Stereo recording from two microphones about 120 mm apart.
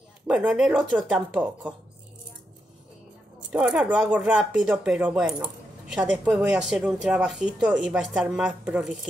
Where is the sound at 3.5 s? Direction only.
10° right (ahead or behind).